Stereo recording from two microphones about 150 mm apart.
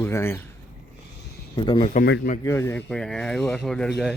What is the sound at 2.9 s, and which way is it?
Speech, 5° left (ahead or behind).